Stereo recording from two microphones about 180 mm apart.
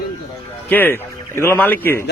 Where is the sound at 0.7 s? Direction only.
10° left (ahead or behind).